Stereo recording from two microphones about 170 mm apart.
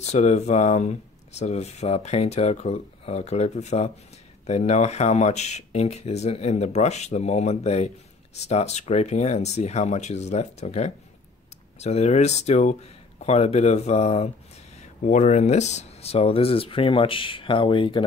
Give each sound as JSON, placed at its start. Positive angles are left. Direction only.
{"t": 0.0, "sound": "speech", "side_deg": 40}